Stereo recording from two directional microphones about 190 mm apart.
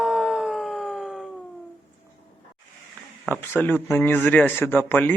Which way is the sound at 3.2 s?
10° left (ahead or behind).